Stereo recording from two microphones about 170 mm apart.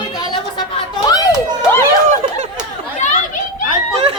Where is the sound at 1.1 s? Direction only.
20° left (ahead or behind).